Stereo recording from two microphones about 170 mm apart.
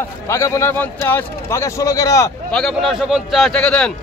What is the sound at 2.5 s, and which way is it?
A man's voice, 5° left (ahead or behind).